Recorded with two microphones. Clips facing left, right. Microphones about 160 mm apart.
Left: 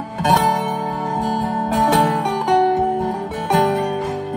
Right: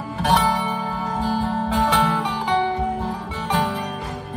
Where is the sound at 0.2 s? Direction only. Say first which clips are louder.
Left 3 dB; 45° left (ahead or behind).